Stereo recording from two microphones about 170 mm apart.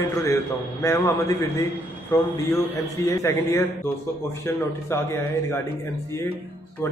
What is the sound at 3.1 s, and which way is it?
Speech, 15° left (ahead or behind).